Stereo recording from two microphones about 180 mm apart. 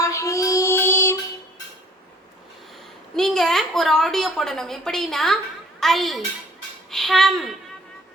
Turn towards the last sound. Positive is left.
turn(degrees=0)  # may be behind; listen again after turning